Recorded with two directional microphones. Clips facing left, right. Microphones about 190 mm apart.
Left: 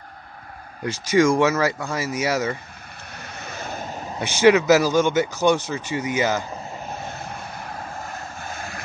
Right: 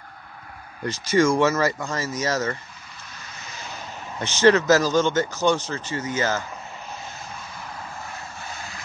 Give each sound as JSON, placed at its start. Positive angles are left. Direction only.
{"t": 0.8, "sound": "speech", "side_deg": 10}
{"t": 3.2, "sound": "vehicle", "side_deg": 60}
{"t": 3.8, "sound": "a sound", "side_deg": 40}
{"t": 4.2, "sound": "speech", "side_deg": 15}
{"t": 7.0, "sound": "vehicle", "side_deg": 60}